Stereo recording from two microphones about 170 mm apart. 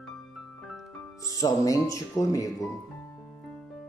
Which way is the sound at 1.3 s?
20° left (ahead or behind).